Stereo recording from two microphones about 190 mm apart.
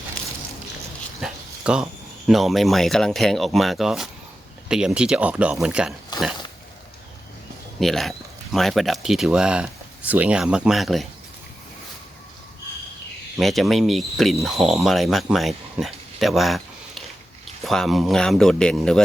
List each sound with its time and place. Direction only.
1.2 s speech: 5° right (ahead or behind)
6.1 s a sound: 20° left (ahead or behind)
7.8 s speech: centre (ahead or behind)
13.4 s speech: centre (ahead or behind)